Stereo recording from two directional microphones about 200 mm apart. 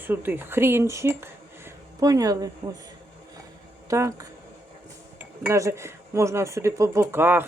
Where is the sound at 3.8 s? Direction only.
15° right (ahead or behind).